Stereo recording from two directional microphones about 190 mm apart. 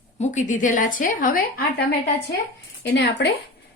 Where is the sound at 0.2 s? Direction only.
40° left (ahead or behind).